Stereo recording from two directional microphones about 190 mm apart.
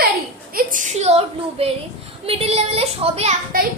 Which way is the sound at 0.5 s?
45° right (ahead or behind).